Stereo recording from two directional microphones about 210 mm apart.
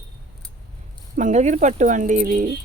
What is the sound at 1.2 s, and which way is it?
Speech, 35° right (ahead or behind).